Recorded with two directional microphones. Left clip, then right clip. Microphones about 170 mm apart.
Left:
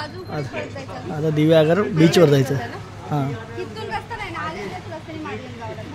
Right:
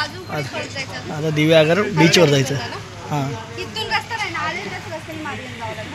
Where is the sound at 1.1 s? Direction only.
25° left (ahead or behind).